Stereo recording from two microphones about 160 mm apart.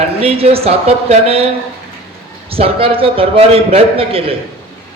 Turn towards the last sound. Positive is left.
turn(degrees=-35)  # may be behind; listen again after turning